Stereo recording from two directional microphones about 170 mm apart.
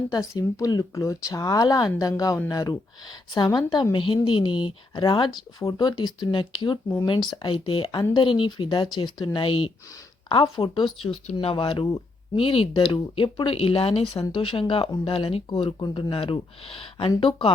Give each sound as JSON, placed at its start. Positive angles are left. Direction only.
{"t": 0.1, "sound": "speech", "side_deg": 20}